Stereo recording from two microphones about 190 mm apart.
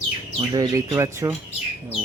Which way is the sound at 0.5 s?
20° right (ahead or behind).